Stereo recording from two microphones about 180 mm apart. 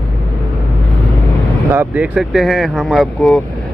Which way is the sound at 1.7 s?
10° right (ahead or behind).